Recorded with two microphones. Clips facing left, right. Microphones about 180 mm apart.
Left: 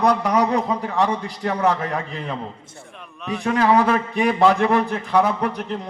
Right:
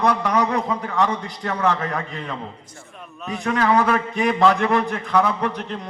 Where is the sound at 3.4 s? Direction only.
30° left (ahead or behind).